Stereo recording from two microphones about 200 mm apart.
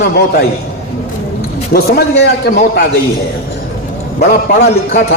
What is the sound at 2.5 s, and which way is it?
Speech, 45° left (ahead or behind).